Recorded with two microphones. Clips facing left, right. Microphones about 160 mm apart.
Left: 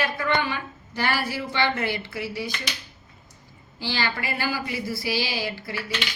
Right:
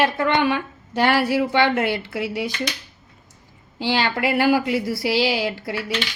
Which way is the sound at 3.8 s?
65° right (ahead or behind).